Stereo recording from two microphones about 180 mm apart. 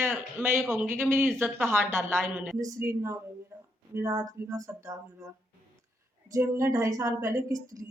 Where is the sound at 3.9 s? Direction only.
20° right (ahead or behind).